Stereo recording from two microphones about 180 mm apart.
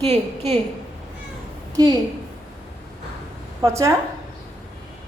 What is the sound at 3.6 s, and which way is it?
Speech, 15° right (ahead or behind).